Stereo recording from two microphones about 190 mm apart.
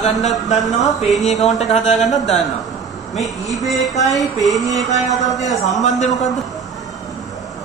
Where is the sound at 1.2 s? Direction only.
35° left (ahead or behind).